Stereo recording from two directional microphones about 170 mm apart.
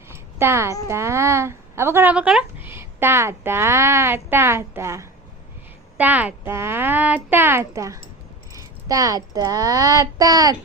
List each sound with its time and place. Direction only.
0.1 s music: 15° right (ahead or behind)
0.9 s a woman's voice: 15° right (ahead or behind)